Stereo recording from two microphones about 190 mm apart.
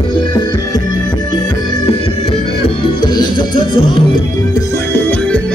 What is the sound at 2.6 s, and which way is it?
Music, 25° left (ahead or behind).